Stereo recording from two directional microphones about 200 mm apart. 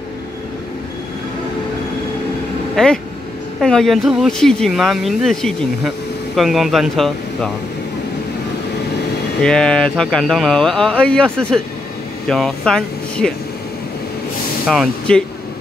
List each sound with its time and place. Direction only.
2.7 s speech: 5° left (ahead or behind)
9.4 s speech: 5° left (ahead or behind)
14.7 s speech: centre (ahead or behind)